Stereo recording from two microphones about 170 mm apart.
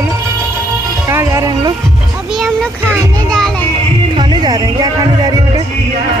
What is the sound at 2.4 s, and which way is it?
Children playing, 5° left (ahead or behind).